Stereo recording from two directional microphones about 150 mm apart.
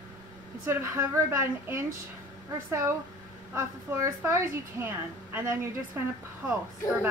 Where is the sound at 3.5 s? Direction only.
20° right (ahead or behind).